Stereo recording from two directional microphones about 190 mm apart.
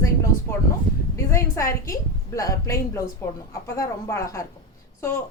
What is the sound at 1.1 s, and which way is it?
A woman's voice, 15° left (ahead or behind).